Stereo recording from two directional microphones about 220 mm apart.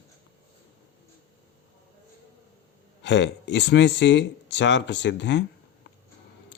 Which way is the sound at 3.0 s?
55° left (ahead or behind).